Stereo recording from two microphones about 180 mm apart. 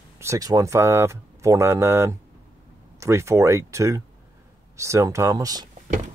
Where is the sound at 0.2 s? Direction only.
20° right (ahead or behind).